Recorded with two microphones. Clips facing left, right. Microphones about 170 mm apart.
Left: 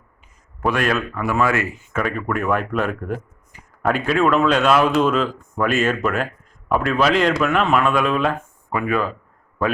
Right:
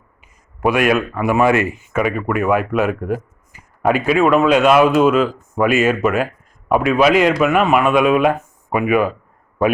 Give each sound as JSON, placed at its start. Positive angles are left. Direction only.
{"t": 0.2, "sound": "speech", "side_deg": -10}